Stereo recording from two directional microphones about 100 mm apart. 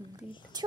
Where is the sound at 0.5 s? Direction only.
45° right (ahead or behind).